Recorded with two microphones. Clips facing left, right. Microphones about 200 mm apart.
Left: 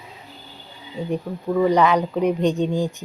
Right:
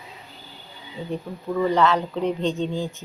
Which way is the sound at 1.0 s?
15° left (ahead or behind).